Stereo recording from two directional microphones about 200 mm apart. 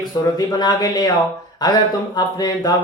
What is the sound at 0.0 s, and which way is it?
Speech, 20° left (ahead or behind).